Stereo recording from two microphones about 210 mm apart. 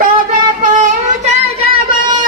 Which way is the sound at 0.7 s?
35° right (ahead or behind).